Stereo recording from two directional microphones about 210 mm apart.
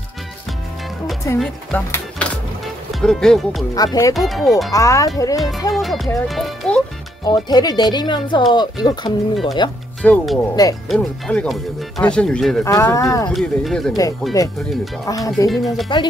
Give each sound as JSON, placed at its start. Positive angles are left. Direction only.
{"t": 1.4, "sound": "speech", "side_deg": 5}
{"t": 3.7, "sound": "speech", "side_deg": 15}
{"t": 4.1, "sound": "speech", "side_deg": 0}
{"t": 4.7, "sound": "speech", "side_deg": 15}
{"t": 5.7, "sound": "speech", "side_deg": 0}
{"t": 7.2, "sound": "speech", "side_deg": 20}
{"t": 10.0, "sound": "speech", "side_deg": 0}
{"t": 10.5, "sound": "speech", "side_deg": 15}
{"t": 10.9, "sound": "speech", "side_deg": 0}
{"t": 12.6, "sound": "speech", "side_deg": 15}
{"t": 13.3, "sound": "speech", "side_deg": 0}
{"t": 14.4, "sound": "speech", "side_deg": 15}
{"t": 15.5, "sound": "speech", "side_deg": 0}